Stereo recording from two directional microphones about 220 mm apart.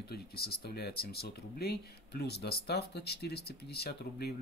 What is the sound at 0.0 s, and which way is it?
Speech, 45° left (ahead or behind).